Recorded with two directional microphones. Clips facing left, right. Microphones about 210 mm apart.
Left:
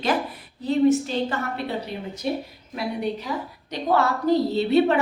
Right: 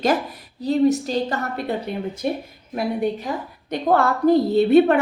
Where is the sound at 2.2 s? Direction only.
55° right (ahead or behind).